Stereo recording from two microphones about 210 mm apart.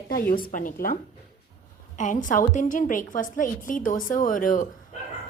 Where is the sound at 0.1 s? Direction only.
45° left (ahead or behind).